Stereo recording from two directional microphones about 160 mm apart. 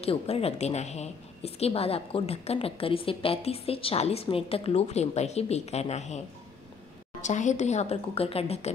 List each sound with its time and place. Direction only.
0.0 s a woman's voice: 40° left (ahead or behind)